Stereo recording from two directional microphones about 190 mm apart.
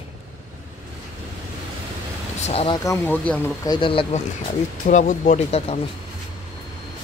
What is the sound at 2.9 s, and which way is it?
Speech, 10° left (ahead or behind).